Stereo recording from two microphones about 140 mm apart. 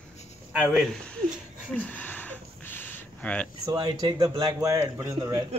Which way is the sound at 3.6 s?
25° right (ahead or behind).